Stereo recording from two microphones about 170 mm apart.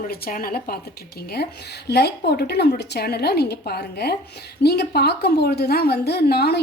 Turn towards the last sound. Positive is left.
turn(degrees=70)  # may be behind; listen again after turning